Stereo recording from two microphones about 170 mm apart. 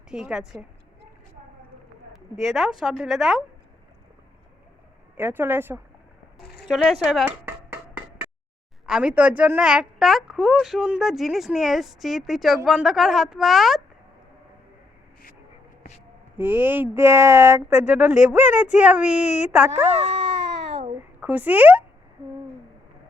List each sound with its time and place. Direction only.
0.1 s a woman's voice: 5° right (ahead or behind)
2.1 s a woman's voice: centre (ahead or behind)
5.1 s speech: 10° right (ahead or behind)
6.4 s a sound: 70° left (ahead or behind)
6.7 s a woman's voice: centre (ahead or behind)
7.3 s a sound: 15° right (ahead or behind)
8.9 s a woman's voice: 5° right (ahead or behind)
16.4 s speech: 10° right (ahead or behind)
21.0 s speech: 10° right (ahead or behind)